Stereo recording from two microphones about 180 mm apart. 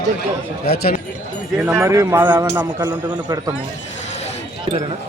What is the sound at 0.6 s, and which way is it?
Speech, 60° left (ahead or behind).